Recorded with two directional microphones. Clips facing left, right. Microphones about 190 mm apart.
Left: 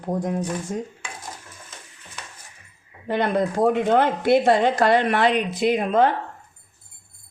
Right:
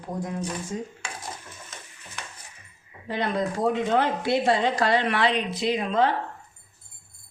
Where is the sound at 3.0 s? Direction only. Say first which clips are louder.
Left 5 dB; 55° left (ahead or behind).